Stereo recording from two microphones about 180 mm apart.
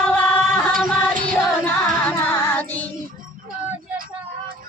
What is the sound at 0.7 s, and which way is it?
Music, 50° right (ahead or behind).